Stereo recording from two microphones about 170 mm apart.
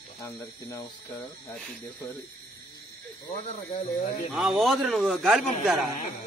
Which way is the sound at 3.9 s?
55° left (ahead or behind).